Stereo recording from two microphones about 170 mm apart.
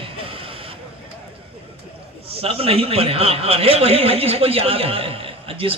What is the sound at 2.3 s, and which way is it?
A man's voice, 35° right (ahead or behind).